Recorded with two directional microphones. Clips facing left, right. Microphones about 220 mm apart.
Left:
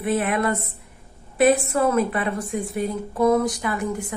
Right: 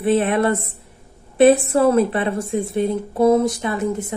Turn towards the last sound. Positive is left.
turn(degrees=-25)  # may be behind; listen again after turning